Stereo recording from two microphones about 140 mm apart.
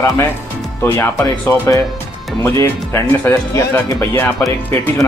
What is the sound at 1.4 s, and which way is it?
Speech, 20° left (ahead or behind).